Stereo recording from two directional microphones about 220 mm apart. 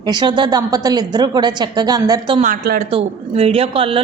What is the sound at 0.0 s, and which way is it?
A woman's voice, 20° right (ahead or behind).